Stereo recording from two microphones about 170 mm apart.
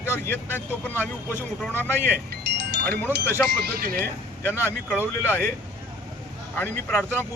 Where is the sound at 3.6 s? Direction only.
60° right (ahead or behind).